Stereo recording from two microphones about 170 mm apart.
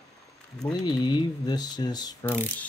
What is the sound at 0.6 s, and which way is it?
Speech, 25° left (ahead or behind).